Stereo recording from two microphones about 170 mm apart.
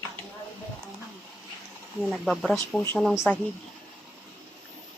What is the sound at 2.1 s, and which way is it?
A man's voice, centre (ahead or behind).